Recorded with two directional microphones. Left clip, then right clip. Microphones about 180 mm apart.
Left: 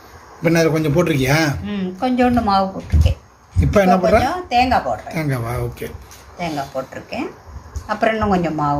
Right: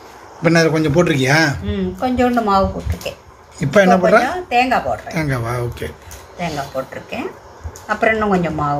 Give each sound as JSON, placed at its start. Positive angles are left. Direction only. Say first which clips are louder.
{"t": 0.4, "sound": "a man's voice", "louder": "right 2 dB", "side_deg": 0}